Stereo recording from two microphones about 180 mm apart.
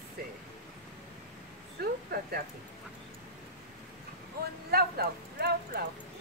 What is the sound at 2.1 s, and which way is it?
Speech, 60° right (ahead or behind).